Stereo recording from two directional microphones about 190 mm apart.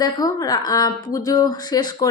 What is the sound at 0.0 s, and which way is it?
Speech, 20° left (ahead or behind).